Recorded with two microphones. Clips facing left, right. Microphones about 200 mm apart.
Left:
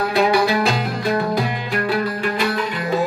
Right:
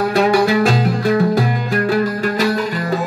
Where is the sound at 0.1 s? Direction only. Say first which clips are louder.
Right 2 dB; 45° right (ahead or behind).